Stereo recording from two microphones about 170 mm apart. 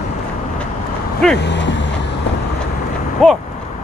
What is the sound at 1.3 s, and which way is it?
Vehicle, 90° left.